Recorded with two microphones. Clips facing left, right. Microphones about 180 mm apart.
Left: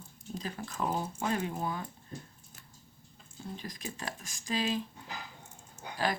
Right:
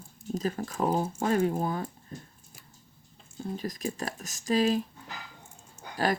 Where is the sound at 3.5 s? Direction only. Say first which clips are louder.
Right 10 dB; 45° right (ahead or behind).